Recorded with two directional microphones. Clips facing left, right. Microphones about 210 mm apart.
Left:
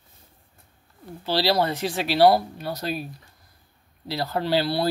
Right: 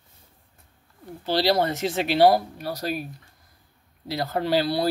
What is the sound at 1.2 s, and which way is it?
Speech, 15° right (ahead or behind).